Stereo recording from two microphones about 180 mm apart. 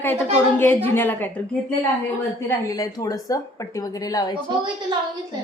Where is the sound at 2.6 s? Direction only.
20° left (ahead or behind).